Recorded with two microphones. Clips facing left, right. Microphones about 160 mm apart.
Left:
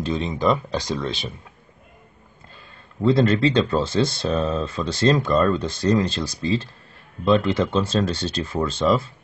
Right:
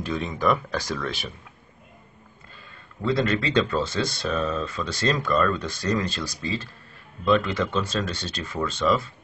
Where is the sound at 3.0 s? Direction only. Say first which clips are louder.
Left 6 dB; 30° left (ahead or behind).